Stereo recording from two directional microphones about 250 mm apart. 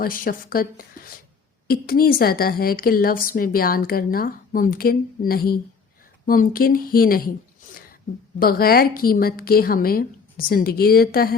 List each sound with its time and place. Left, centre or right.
0.0 s a woman's voice: left
7.7 s a sound: left
8.4 s a woman's voice: left